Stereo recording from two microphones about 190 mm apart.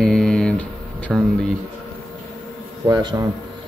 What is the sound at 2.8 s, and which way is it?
Speech, 20° right (ahead or behind).